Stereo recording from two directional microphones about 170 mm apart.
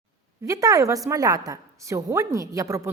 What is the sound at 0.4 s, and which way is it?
A woman's voice, 20° right (ahead or behind).